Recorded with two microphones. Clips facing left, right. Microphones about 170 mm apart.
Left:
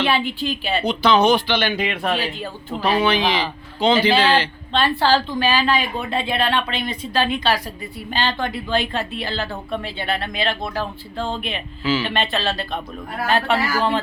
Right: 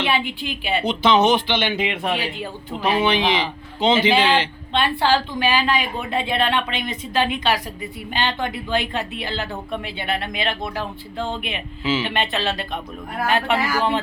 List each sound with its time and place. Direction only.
0.0 s a woman's voice: 15° right (ahead or behind)